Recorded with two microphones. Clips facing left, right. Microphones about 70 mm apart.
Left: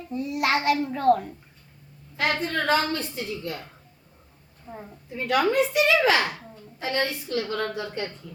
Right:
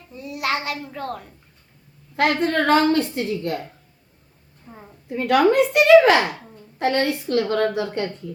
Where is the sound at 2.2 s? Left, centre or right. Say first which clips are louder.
Right 6 dB; right.